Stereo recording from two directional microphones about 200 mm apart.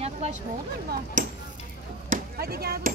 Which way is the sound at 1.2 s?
40° right (ahead or behind).